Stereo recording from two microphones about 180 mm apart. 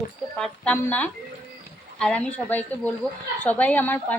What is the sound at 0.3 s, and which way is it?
A woman's voice, 5° left (ahead or behind).